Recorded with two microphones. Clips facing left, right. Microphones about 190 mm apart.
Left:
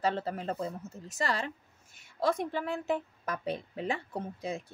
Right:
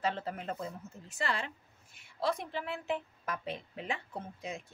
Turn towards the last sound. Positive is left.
turn(degrees=35)  # may be behind; listen again after turning